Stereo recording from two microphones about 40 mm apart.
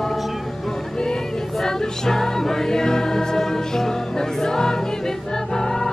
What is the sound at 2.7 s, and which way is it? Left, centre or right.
Music, centre.